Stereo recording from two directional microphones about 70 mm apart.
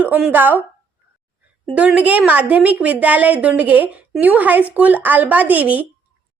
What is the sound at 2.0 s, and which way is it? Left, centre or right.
A woman's voice, right.